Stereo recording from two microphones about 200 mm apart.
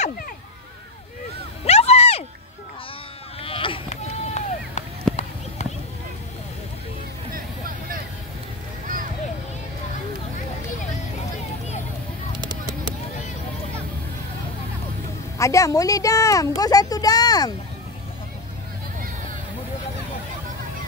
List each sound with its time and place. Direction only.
1.6 s a sound: 30° left (ahead or behind)
3.3 s run: 25° left (ahead or behind)
5.1 s run: centre (ahead or behind)
7.3 s music: 45° right (ahead or behind)
8.8 s a sound: 45° right (ahead or behind)
15.3 s speech: 15° left (ahead or behind)